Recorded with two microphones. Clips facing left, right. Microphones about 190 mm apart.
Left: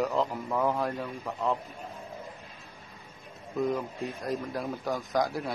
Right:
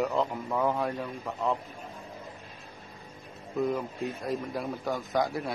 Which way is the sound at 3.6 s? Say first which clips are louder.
Even; centre (ahead or behind).